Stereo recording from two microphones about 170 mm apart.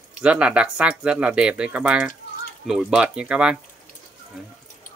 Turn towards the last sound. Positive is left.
turn(degrees=-5)  # may be behind; listen again after turning